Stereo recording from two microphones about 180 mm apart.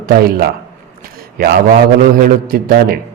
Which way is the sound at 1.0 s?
60° right (ahead or behind).